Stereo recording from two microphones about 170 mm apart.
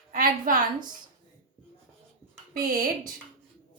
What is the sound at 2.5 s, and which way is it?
Speech, 60° right (ahead or behind).